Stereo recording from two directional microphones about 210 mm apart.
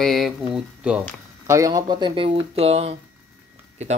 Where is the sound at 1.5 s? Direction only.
15° right (ahead or behind).